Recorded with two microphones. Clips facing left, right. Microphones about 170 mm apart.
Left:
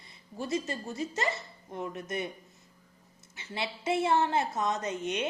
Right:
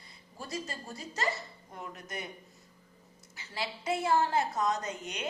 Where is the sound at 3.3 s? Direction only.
25° left (ahead or behind).